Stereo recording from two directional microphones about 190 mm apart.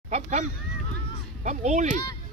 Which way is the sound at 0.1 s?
35° right (ahead or behind).